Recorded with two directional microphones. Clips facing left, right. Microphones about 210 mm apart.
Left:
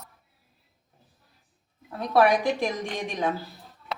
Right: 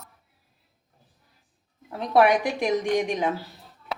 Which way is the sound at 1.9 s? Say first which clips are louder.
Right 1 dB; 20° right (ahead or behind).